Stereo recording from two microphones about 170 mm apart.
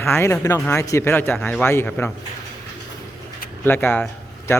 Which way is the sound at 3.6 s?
10° left (ahead or behind).